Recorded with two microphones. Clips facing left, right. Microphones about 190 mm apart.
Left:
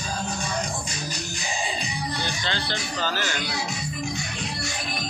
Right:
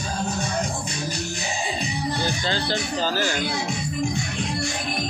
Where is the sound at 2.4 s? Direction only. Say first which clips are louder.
Right 5 dB; 40° right (ahead or behind).